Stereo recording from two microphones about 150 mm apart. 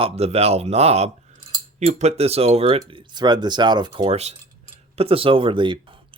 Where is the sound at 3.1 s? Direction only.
30° right (ahead or behind).